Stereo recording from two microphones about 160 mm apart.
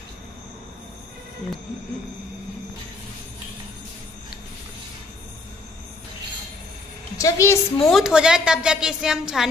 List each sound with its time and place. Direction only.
7.2 s a woman's voice: 20° left (ahead or behind)
7.9 s a woman's voice: 5° right (ahead or behind)